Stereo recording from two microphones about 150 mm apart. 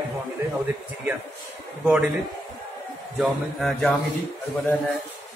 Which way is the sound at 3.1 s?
Centre (ahead or behind).